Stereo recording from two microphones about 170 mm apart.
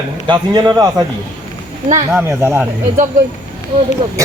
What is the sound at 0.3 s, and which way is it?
Speech, 25° right (ahead or behind).